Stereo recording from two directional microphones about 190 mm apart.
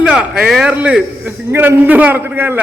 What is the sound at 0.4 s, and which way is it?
A man's voice, 5° right (ahead or behind).